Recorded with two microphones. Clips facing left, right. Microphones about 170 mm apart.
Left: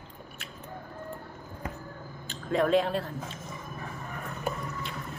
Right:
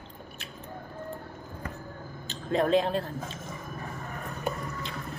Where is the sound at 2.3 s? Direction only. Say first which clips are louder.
Even; 25° right (ahead or behind).